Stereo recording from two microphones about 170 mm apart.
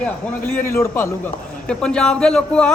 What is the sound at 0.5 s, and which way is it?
A man's voice, 15° left (ahead or behind).